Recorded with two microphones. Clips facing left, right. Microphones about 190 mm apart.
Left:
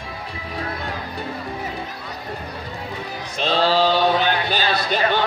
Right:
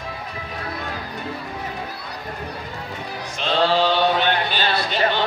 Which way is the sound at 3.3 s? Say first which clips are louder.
Left 1 dB; 35° left (ahead or behind).